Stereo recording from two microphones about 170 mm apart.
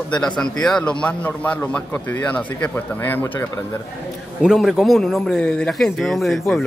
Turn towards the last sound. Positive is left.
turn(degrees=0)  # may be behind; listen again after turning